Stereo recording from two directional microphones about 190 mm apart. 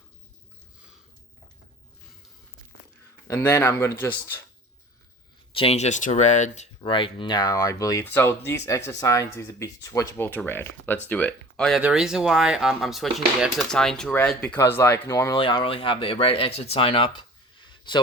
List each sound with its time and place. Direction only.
3.2 s speech: 15° left (ahead or behind)
5.5 s speech: 35° left (ahead or behind)
6.8 s speech: 25° left (ahead or behind)